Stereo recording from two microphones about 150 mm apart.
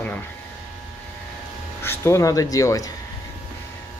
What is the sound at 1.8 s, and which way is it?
Speech, 15° left (ahead or behind).